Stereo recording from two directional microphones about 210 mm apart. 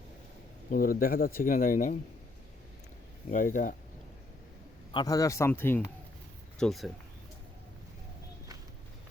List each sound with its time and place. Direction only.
0.7 s speech: 40° left (ahead or behind)
3.2 s speech: 40° left (ahead or behind)
4.9 s speech: 20° left (ahead or behind); by 6.9 s centre (ahead or behind)